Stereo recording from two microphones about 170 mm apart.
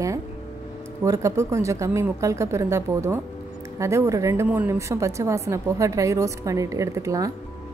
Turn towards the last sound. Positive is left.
turn(degrees=-20)  # may be behind; listen again after turning